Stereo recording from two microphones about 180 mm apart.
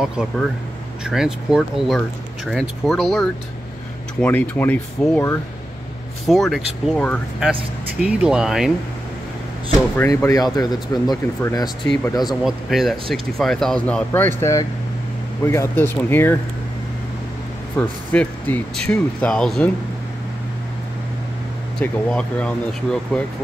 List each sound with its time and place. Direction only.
0.0 s speech: centre (ahead or behind)
6.2 s speech: centre (ahead or behind)
9.9 s speech: 15° left (ahead or behind)
12.2 s speech: centre (ahead or behind)
17.7 s speech: 10° left (ahead or behind)
21.7 s speech: 5° left (ahead or behind)